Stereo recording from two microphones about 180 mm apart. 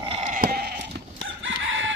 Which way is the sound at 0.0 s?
30° right (ahead or behind).